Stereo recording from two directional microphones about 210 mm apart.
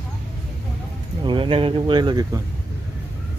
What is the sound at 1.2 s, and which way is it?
Speech, 25° right (ahead or behind).